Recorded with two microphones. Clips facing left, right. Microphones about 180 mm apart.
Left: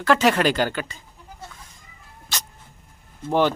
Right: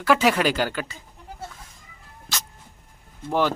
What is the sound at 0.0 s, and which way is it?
Speech, 10° right (ahead or behind).